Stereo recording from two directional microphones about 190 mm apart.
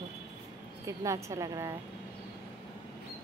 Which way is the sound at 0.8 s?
15° right (ahead or behind).